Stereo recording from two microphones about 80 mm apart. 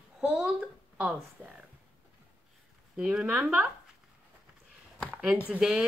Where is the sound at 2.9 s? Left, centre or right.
Centre.